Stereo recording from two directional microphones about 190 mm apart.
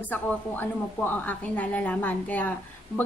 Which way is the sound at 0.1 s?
10° left (ahead or behind).